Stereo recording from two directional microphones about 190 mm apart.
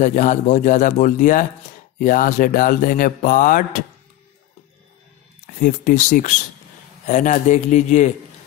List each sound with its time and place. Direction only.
0.0 s a man's voice: 40° left (ahead or behind)
2.0 s mantra: 45° left (ahead or behind)
5.6 s a man's voice: 40° left (ahead or behind)